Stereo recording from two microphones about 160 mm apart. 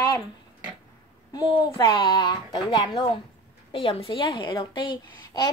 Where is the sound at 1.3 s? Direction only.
30° left (ahead or behind).